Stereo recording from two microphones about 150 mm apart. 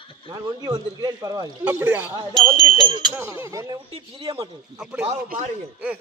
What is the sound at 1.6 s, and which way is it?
A man's voice, 15° right (ahead or behind).